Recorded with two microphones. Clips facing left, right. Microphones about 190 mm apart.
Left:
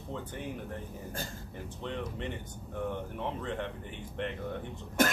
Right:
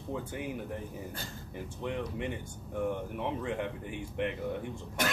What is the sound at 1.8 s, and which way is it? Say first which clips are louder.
Speech: right 2 dB; 10° right (ahead or behind).